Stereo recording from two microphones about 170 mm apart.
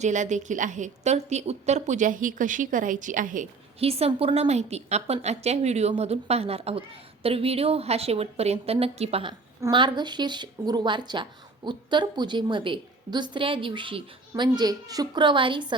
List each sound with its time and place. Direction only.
0.0 s a woman's voice: 45° right (ahead or behind)
3.8 s a woman's voice: 35° right (ahead or behind)
9.6 s speech: 25° right (ahead or behind)